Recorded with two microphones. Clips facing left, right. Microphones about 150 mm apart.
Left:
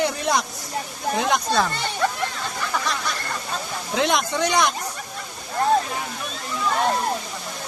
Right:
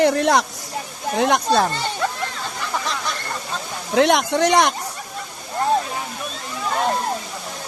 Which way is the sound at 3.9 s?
65° right (ahead or behind).